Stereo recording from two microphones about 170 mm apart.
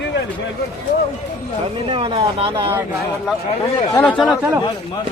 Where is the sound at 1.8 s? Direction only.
30° right (ahead or behind).